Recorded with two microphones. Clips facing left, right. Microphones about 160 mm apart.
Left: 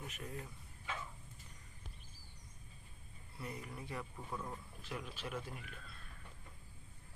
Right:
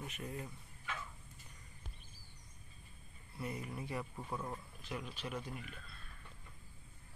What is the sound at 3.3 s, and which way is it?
Speech, 5° right (ahead or behind).